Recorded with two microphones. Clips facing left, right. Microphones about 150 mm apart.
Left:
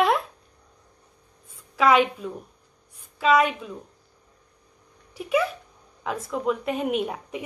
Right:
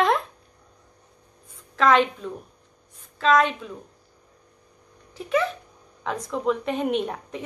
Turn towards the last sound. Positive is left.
turn(degrees=5)  # may be behind; listen again after turning